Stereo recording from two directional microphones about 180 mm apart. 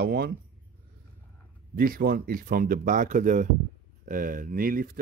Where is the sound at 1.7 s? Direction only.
55° right (ahead or behind).